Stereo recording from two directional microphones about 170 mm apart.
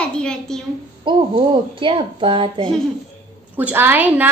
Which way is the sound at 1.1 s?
30° right (ahead or behind).